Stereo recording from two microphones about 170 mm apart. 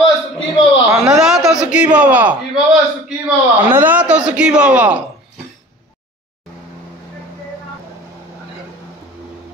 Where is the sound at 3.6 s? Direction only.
10° right (ahead or behind).